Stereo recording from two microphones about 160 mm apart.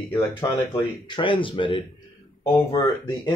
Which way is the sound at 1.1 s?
30° left (ahead or behind).